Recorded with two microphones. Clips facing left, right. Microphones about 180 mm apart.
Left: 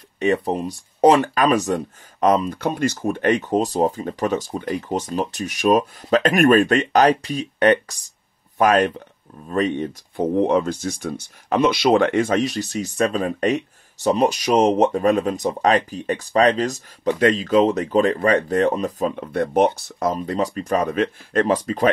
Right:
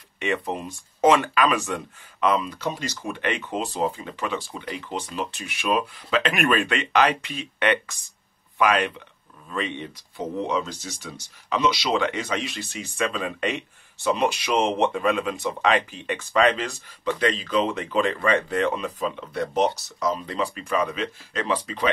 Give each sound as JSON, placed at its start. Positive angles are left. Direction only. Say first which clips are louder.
{"t": 0.2, "sound": "speech", "louder": "left 7 dB", "side_deg": 35}